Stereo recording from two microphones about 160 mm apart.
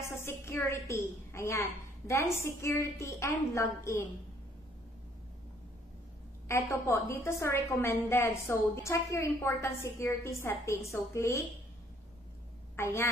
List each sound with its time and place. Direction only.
0.2 s a woman's voice: 15° left (ahead or behind)
6.4 s a woman's voice: 15° left (ahead or behind)
12.7 s a woman's voice: 15° left (ahead or behind)